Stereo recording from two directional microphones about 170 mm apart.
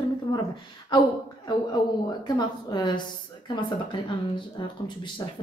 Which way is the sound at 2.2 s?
25° left (ahead or behind).